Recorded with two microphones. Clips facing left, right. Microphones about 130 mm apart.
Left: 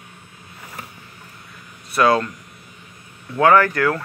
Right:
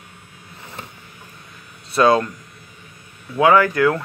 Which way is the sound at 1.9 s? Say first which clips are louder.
Right 2 dB; 20° right (ahead or behind).